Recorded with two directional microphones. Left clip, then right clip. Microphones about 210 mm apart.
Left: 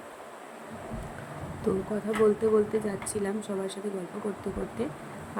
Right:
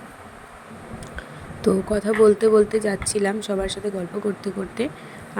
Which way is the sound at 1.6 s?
25° right (ahead or behind).